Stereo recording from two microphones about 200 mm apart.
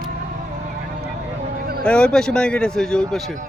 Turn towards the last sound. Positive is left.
turn(degrees=5)  # may be behind; listen again after turning